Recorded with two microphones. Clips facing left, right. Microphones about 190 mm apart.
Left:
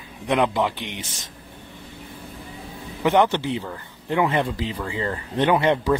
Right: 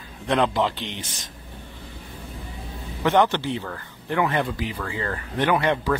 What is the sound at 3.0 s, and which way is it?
Speech, 15° left (ahead or behind).